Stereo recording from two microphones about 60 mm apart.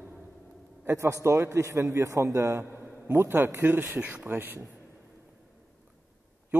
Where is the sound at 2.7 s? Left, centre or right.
Right.